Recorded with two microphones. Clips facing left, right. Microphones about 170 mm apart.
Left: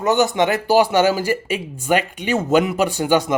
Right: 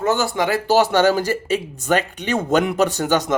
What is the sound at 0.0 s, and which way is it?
Speech, 20° left (ahead or behind).